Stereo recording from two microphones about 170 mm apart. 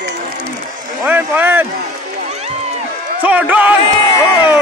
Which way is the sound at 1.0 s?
10° right (ahead or behind).